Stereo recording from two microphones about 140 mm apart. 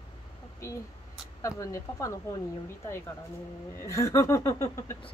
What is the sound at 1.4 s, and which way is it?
Speech, 20° left (ahead or behind).